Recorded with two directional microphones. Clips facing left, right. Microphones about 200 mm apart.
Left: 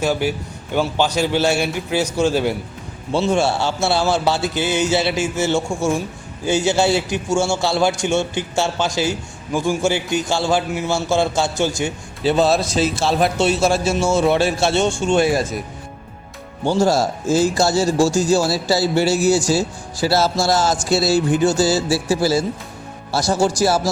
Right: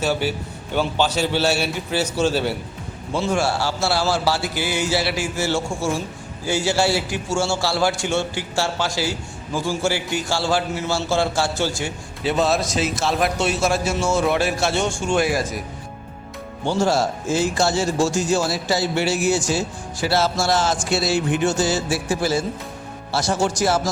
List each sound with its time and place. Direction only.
0.0 s a man's voice: 10° left (ahead or behind)
3.1 s a man's voice: 25° left (ahead or behind)
12.2 s a man's voice: 30° left (ahead or behind)
16.6 s a man's voice: 40° left (ahead or behind)